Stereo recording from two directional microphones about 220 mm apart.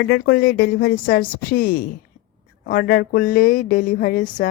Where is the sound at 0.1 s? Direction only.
50° left (ahead or behind).